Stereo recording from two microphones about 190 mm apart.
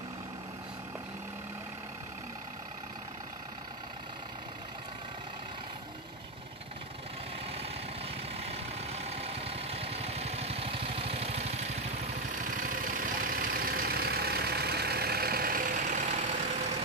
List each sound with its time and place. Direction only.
8.4 s vehicle: 35° right (ahead or behind)
12.3 s vehicle: 45° right (ahead or behind)